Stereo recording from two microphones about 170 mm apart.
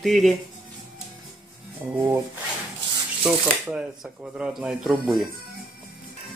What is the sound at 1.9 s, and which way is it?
Speech, 15° right (ahead or behind).